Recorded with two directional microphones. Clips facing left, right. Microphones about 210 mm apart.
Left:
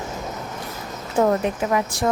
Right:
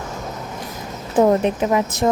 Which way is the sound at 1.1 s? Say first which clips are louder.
Right 4 dB; 20° right (ahead or behind).